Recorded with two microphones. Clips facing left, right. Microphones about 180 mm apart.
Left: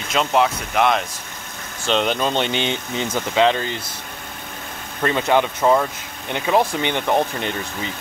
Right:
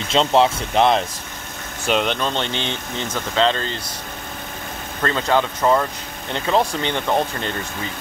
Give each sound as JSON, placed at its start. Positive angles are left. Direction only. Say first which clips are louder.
{"t": 0.1, "sound": "speech", "louder": "right 2 dB", "side_deg": -25}
{"t": 1.9, "sound": "speech", "louder": "even", "side_deg": -5}
{"t": 2.1, "sound": "speech", "louder": "left 3 dB", "side_deg": 10}
{"t": 5.0, "sound": "speech", "louder": "left 1 dB", "side_deg": 15}